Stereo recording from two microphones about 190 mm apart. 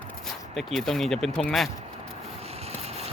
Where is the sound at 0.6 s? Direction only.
Centre (ahead or behind).